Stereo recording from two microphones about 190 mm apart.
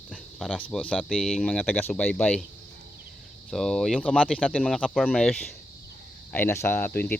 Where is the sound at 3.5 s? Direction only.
Centre (ahead or behind).